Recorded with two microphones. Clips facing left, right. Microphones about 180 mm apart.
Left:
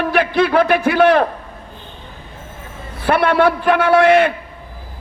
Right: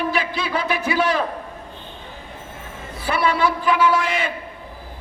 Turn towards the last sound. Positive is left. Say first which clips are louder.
# left 9 dB
turn(degrees=60)  # may be behind; listen again after turning